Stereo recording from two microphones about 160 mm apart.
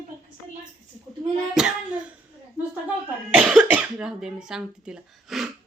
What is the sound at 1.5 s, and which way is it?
Child singing, 5° right (ahead or behind).